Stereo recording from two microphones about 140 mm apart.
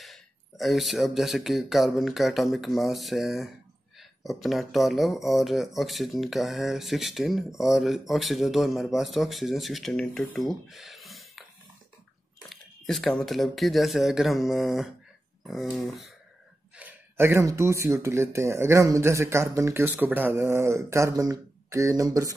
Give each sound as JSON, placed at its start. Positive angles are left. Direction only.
{"t": 0.0, "sound": "speech", "side_deg": 0}
{"t": 10.7, "sound": "a sound", "side_deg": 0}
{"t": 12.4, "sound": "speech", "side_deg": 0}
{"t": 16.7, "sound": "speech", "side_deg": -15}